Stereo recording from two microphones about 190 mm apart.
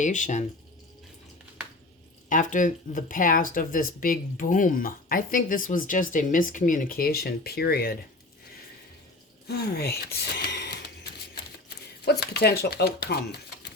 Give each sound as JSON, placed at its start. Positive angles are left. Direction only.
{"t": 0.0, "sound": "speech", "side_deg": 40}
{"t": 2.3, "sound": "speech", "side_deg": 40}
{"t": 9.5, "sound": "speech", "side_deg": 55}
{"t": 12.2, "sound": "speech", "side_deg": 60}